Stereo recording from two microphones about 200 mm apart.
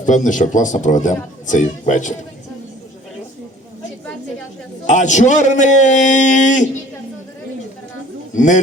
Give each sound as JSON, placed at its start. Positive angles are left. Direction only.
{"t": 0.0, "sound": "speech", "side_deg": 40}
{"t": 4.9, "sound": "speech", "side_deg": 40}
{"t": 8.4, "sound": "speech", "side_deg": 40}